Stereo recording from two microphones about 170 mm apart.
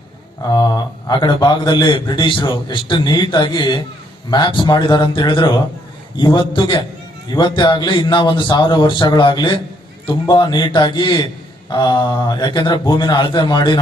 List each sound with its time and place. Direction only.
0.5 s a man's voice: 25° left (ahead or behind)